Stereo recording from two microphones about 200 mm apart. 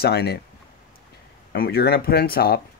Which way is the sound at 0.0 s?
50° left (ahead or behind).